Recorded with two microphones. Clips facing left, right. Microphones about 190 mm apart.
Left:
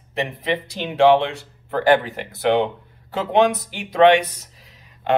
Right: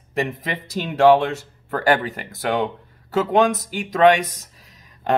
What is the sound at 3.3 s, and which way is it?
Speech, 45° right (ahead or behind).